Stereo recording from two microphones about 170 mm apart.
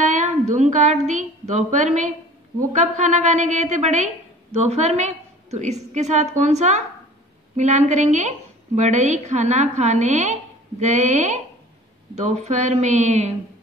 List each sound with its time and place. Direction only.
0.0 s a woman's voice: 45° right (ahead or behind)